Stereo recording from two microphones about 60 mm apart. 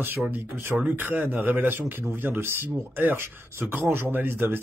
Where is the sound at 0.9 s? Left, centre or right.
Right.